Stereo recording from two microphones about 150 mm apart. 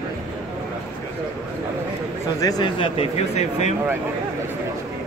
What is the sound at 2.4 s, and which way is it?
A man's voice, 25° left (ahead or behind).